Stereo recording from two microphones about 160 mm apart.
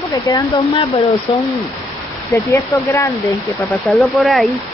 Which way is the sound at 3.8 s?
Centre (ahead or behind).